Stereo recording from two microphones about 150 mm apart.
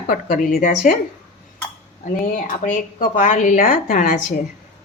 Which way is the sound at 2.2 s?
60° left (ahead or behind).